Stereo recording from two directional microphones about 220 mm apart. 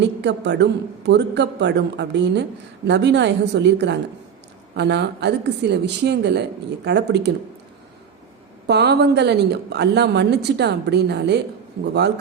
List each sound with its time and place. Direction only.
0.0 s a woman's voice: 50° right (ahead or behind)
8.6 s a woman's voice: 50° right (ahead or behind)